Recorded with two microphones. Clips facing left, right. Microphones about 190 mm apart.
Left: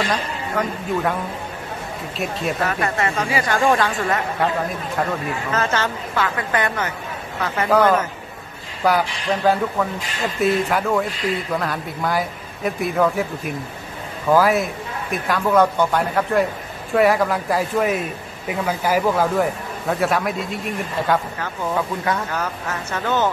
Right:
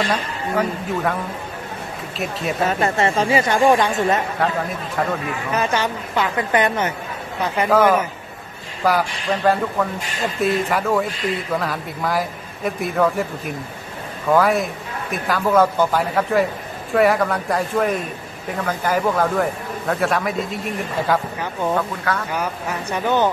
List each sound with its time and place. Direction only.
0.1 s a man's voice: 5° right (ahead or behind)
2.6 s speech: 25° right (ahead or behind)
4.4 s a man's voice: centre (ahead or behind)
5.5 s speech: 15° right (ahead or behind)
8.8 s a man's voice: centre (ahead or behind)
14.3 s a man's voice: centre (ahead or behind)
22.3 s speech: 15° right (ahead or behind)